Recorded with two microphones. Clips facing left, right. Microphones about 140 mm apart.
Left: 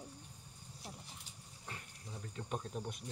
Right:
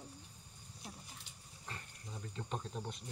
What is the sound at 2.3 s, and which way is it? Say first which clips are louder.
Speech: left 1 dB; 10° left (ahead or behind).